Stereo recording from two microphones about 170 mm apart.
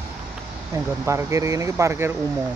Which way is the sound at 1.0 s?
15° right (ahead or behind).